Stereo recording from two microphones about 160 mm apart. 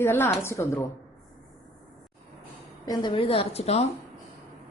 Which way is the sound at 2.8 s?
25° left (ahead or behind).